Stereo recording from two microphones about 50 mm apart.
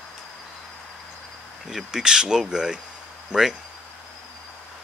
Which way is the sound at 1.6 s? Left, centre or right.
Centre.